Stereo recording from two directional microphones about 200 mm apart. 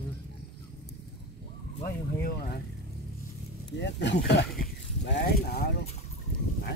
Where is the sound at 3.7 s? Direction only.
60° left (ahead or behind).